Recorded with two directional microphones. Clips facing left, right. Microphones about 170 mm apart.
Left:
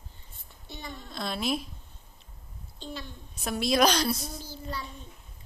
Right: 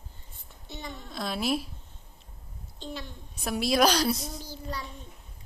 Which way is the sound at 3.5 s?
5° right (ahead or behind).